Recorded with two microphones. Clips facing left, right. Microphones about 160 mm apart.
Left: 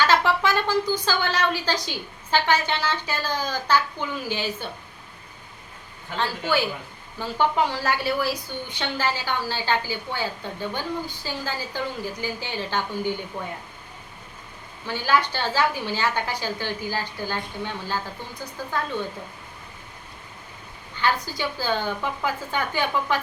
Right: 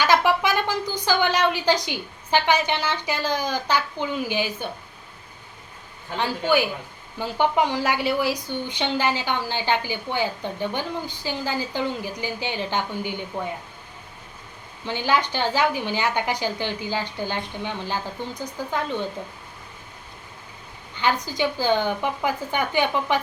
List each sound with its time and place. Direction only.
0.0 s a woman's voice: 15° right (ahead or behind)
6.1 s a woman's voice: 15° right (ahead or behind)
14.8 s a woman's voice: 20° right (ahead or behind)
20.9 s a woman's voice: 20° right (ahead or behind)